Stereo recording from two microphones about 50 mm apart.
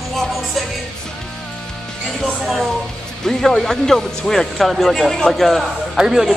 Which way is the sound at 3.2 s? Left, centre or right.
Centre.